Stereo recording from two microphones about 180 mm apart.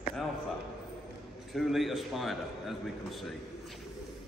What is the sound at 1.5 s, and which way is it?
A man's voice, centre (ahead or behind).